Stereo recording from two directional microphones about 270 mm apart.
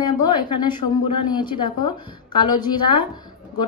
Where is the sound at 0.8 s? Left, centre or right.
Left.